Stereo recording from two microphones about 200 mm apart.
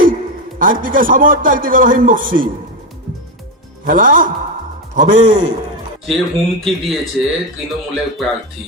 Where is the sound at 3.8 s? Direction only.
45° right (ahead or behind).